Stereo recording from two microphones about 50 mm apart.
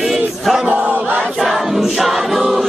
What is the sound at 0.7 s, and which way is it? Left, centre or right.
Battle cry, right.